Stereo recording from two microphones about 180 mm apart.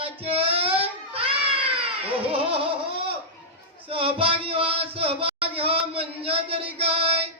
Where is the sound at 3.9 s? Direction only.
30° right (ahead or behind).